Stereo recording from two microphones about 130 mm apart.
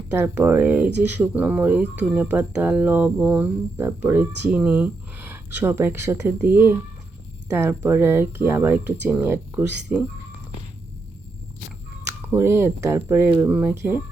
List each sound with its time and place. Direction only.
0.2 s speech: 15° right (ahead or behind)
12.0 s speech: 20° right (ahead or behind)